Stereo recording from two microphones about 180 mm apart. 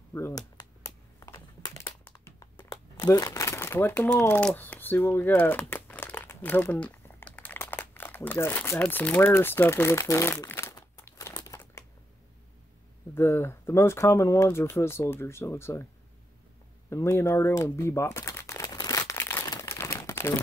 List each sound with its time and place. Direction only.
0.1 s a sound: 20° left (ahead or behind)
13.1 s speech: 15° left (ahead or behind)
16.9 s crumpling: 15° left (ahead or behind)